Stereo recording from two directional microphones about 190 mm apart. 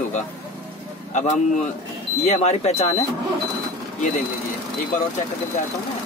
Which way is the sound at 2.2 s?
35° left (ahead or behind).